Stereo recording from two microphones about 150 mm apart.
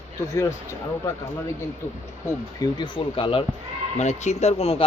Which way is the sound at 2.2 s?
25° left (ahead or behind).